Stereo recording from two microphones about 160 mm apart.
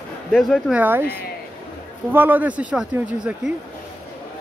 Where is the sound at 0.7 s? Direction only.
10° right (ahead or behind).